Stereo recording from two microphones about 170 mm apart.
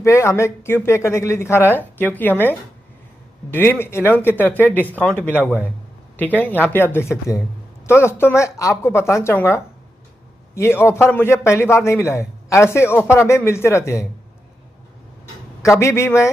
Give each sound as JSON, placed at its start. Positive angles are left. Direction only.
{"t": 0.0, "sound": "speech", "side_deg": 15}
{"t": 15.6, "sound": "speech", "side_deg": 15}